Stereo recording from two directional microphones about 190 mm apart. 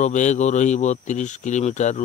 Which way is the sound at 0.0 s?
40° left (ahead or behind).